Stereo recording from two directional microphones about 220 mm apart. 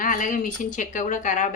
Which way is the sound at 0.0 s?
35° left (ahead or behind).